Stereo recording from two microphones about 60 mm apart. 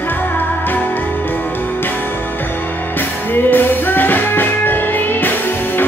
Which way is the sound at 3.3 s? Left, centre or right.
Left.